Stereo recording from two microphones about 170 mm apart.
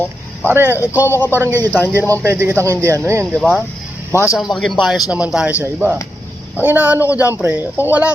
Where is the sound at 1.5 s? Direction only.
10° left (ahead or behind).